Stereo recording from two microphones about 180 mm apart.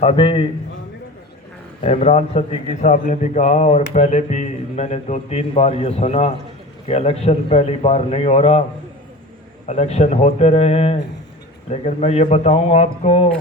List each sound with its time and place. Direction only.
0.0 s a man's voice: 30° left (ahead or behind)
1.8 s a man's voice: 35° left (ahead or behind)
9.6 s a man's voice: 40° left (ahead or behind)